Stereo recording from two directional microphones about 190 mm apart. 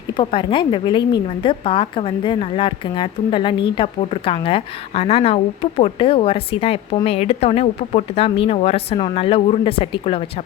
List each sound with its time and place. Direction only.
0.1 s speech: 25° left (ahead or behind)